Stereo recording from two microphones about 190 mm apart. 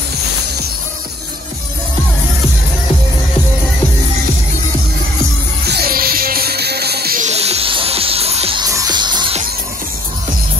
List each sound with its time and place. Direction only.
5.7 s music: 55° right (ahead or behind)
7.2 s music: 35° right (ahead or behind)